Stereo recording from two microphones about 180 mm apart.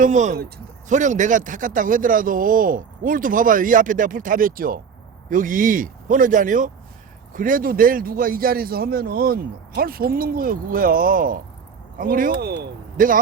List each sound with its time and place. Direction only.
0.0 s a man's voice: 40° right (ahead or behind)